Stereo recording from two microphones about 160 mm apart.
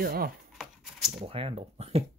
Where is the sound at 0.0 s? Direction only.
75° right (ahead or behind).